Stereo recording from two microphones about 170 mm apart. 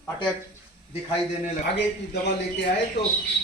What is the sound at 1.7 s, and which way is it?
A man's voice, 90° left.